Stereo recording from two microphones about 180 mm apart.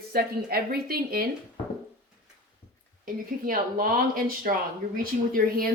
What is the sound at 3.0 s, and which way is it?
Speech, 50° right (ahead or behind).